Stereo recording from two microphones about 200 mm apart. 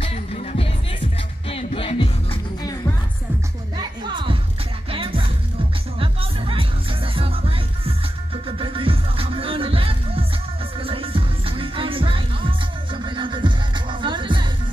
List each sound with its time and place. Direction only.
0.0 s music: 30° left (ahead or behind)
3.7 s music: 25° right (ahead or behind)